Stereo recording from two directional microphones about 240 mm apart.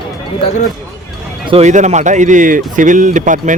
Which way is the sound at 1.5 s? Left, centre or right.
Right.